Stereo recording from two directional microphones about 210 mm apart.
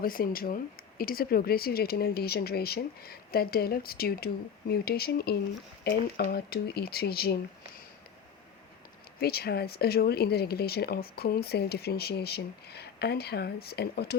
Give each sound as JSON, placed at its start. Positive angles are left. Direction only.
{"t": 0.0, "sound": "speech", "side_deg": 45}
{"t": 9.2, "sound": "speech", "side_deg": 50}